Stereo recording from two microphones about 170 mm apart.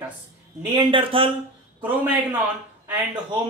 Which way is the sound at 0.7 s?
30° right (ahead or behind).